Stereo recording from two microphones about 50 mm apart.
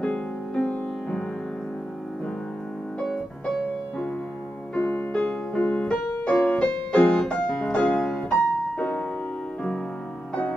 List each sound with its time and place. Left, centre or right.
0.6 s music: centre
4.7 s music: left